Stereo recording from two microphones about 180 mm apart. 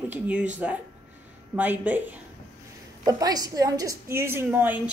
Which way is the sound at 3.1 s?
20° right (ahead or behind).